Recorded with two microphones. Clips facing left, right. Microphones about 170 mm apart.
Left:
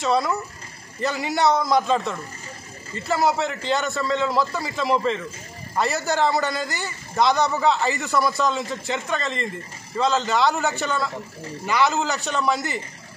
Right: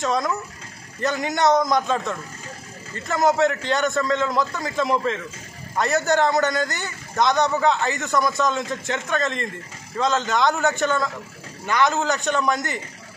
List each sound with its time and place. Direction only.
0.0 s a man's voice: 5° left (ahead or behind)